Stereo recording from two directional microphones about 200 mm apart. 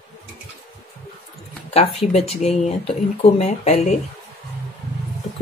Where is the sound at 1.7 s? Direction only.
30° left (ahead or behind).